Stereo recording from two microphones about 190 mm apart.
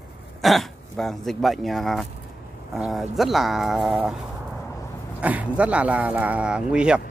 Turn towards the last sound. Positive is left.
turn(degrees=-5)  # may be behind; listen again after turning